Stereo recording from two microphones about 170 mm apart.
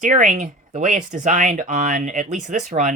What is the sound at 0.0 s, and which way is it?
Speech, 50° right (ahead or behind).